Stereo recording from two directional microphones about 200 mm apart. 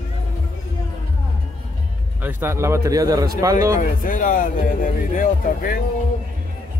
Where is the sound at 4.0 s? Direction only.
40° left (ahead or behind).